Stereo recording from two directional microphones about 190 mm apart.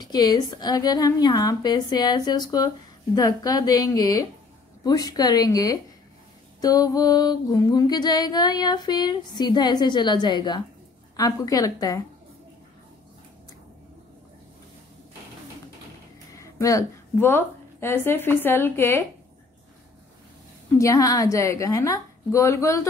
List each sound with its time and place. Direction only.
0.0 s music: 20° left (ahead or behind)
16.3 s a woman's voice: 15° left (ahead or behind)
20.7 s a woman's voice: 15° left (ahead or behind)